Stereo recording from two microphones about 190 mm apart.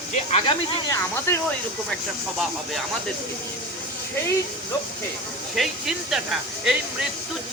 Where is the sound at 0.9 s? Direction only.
15° left (ahead or behind).